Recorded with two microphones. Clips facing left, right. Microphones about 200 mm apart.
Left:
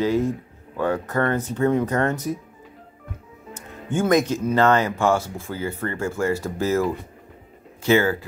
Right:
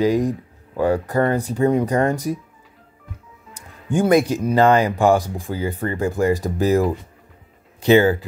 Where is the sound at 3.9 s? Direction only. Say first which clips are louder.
Right 3 dB; 10° right (ahead or behind).